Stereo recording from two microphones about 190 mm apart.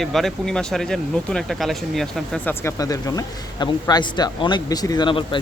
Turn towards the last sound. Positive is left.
turn(degrees=25)  # may be behind; listen again after turning